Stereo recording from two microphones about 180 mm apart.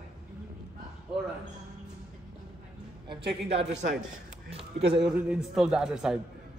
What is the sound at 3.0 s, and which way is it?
Speech, 35° right (ahead or behind).